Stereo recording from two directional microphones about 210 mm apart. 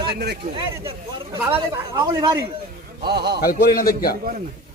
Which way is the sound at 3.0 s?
50° right (ahead or behind).